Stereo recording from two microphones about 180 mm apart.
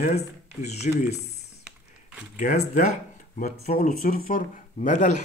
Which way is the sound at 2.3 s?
40° left (ahead or behind).